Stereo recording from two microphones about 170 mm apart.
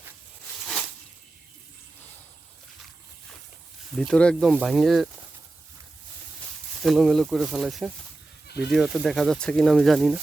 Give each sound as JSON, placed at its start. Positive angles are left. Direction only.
{"t": 3.9, "sound": "speech", "side_deg": 5}
{"t": 6.8, "sound": "speech", "side_deg": 0}
{"t": 8.4, "sound": "speech", "side_deg": 75}
{"t": 8.7, "sound": "speech", "side_deg": -5}